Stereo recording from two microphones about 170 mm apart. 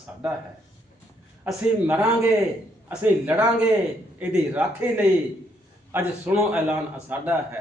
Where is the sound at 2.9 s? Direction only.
10° right (ahead or behind).